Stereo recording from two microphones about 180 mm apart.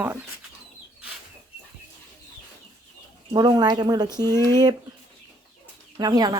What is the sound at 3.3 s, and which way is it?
Speech, 20° right (ahead or behind).